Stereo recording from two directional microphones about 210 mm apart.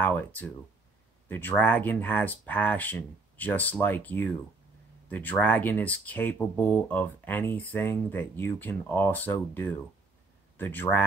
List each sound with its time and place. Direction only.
0.0 s speech: 5° left (ahead or behind)